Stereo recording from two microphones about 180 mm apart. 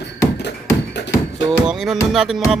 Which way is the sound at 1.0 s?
75° left (ahead or behind).